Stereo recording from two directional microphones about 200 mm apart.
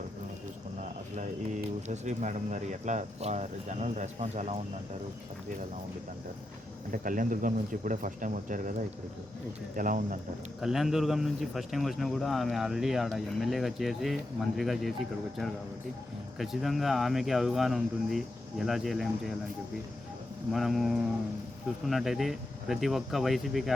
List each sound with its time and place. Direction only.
0.8 s cricket: 40° right (ahead or behind)
1.9 s speech: 35° right (ahead or behind)
6.9 s speech: 40° right (ahead or behind)
9.7 s speech: 40° right (ahead or behind)
10.6 s a man's voice: centre (ahead or behind)
16.4 s a man's voice: centre (ahead or behind)
20.5 s a man's voice: centre (ahead or behind)